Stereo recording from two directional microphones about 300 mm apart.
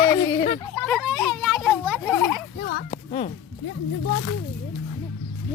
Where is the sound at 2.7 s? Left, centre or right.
Left.